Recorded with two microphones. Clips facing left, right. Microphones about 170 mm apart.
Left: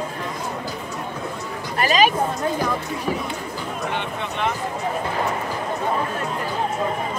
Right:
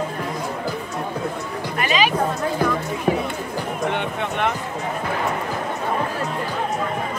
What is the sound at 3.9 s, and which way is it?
Music, 55° right (ahead or behind).